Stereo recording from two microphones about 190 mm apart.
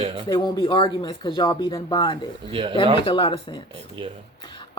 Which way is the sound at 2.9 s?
25° left (ahead or behind).